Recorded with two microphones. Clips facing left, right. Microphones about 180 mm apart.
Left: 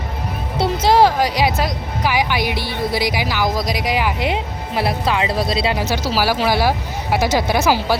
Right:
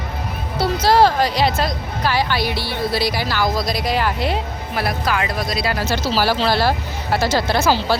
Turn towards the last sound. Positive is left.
turn(degrees=15)  # may be behind; listen again after turning